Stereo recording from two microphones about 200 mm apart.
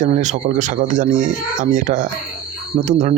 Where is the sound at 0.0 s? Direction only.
40° right (ahead or behind).